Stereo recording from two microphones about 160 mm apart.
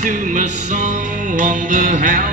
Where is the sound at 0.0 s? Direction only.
50° right (ahead or behind).